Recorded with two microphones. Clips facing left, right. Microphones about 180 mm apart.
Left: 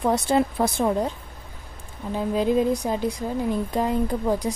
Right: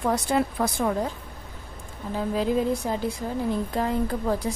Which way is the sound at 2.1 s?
20° left (ahead or behind).